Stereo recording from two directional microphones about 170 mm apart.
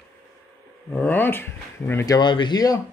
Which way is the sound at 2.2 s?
25° left (ahead or behind).